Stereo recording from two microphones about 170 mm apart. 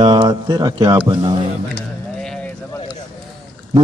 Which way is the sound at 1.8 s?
5° left (ahead or behind).